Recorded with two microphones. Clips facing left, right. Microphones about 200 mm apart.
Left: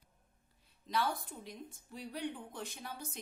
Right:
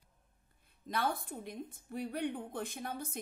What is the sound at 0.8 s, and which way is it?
A woman's voice, 55° right (ahead or behind).